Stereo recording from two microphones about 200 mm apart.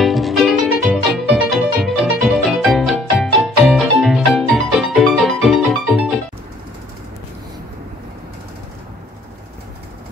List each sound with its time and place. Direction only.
0.0 s music: centre (ahead or behind)